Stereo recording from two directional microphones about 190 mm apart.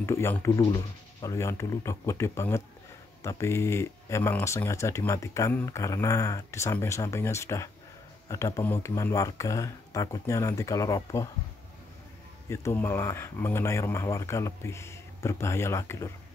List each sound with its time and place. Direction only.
0.0 s speech: 15° left (ahead or behind)
12.4 s speech: 15° left (ahead or behind)